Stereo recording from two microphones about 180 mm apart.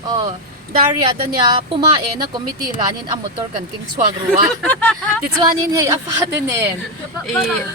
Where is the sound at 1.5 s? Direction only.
25° right (ahead or behind).